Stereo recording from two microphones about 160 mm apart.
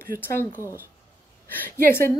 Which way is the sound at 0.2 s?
15° left (ahead or behind).